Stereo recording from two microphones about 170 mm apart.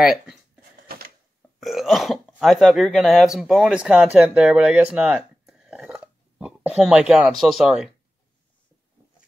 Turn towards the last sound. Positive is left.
turn(degrees=-5)  # may be behind; listen again after turning